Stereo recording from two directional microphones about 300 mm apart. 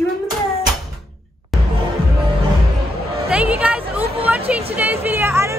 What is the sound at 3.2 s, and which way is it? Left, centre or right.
A woman's voice, centre.